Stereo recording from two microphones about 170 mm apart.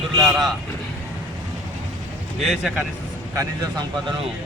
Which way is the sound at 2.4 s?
Centre (ahead or behind).